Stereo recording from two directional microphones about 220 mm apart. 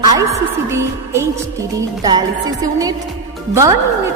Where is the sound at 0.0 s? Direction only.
15° right (ahead or behind).